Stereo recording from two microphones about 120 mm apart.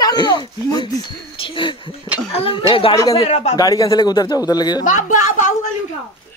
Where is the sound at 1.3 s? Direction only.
50° left (ahead or behind).